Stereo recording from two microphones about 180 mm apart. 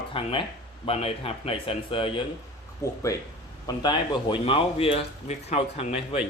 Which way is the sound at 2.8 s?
15° left (ahead or behind).